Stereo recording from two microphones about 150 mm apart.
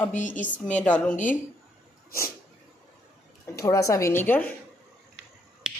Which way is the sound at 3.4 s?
20° left (ahead or behind).